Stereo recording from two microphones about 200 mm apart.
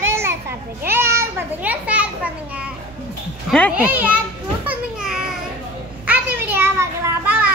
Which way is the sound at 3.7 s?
5° right (ahead or behind).